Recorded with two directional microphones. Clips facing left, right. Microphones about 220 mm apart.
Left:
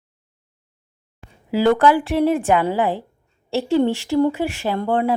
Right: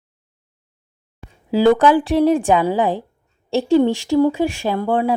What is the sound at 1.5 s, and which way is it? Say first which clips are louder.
Speech: right 2 dB; 15° right (ahead or behind).